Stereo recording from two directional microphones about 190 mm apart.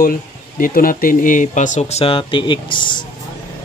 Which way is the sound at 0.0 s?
50° left (ahead or behind).